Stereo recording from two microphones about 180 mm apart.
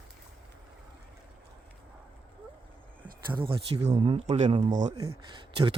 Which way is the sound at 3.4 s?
30° right (ahead or behind).